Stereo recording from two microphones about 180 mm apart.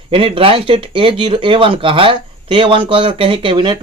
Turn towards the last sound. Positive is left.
turn(degrees=-25)  # may be behind; listen again after turning